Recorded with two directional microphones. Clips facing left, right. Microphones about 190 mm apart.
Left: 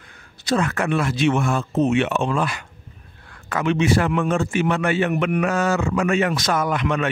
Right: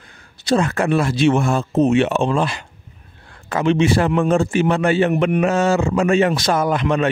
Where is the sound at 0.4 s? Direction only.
30° right (ahead or behind).